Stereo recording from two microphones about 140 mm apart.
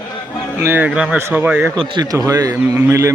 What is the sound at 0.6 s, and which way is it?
Speech, 15° right (ahead or behind).